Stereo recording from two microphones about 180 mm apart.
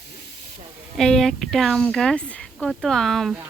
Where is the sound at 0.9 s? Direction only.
5° left (ahead or behind).